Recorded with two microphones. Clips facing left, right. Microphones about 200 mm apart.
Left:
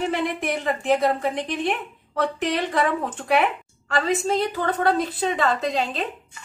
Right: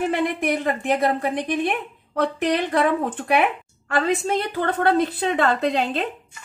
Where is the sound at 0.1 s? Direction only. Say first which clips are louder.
Right 3 dB; 55° right (ahead or behind).